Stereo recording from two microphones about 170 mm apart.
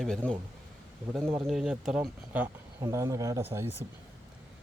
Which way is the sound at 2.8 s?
20° right (ahead or behind).